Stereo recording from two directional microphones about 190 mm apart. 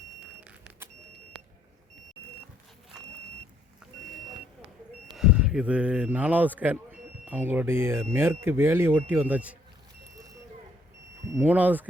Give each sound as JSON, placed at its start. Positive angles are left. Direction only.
{"t": 4.4, "sound": "vehicle", "side_deg": -30}
{"t": 5.1, "sound": "speech", "side_deg": -5}
{"t": 11.3, "sound": "speech", "side_deg": -10}